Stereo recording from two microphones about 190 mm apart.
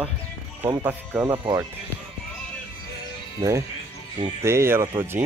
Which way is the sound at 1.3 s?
25° right (ahead or behind).